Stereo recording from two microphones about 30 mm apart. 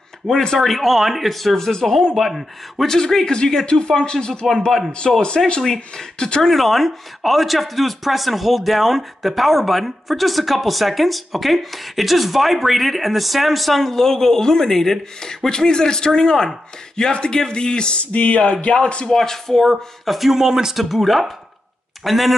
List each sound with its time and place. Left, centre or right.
0.2 s speech: centre
0.6 s speech: centre
1.3 s speech: centre
2.1 s speech: centre
2.9 s speech: centre
3.8 s speech: left
5.1 s speech: centre
5.6 s speech: centre
6.4 s speech: centre; by 18.0 s left
18.1 s music: left
18.7 s speech: left
19.0 s speech: centre
19.6 s speech: centre
20.7 s speech: centre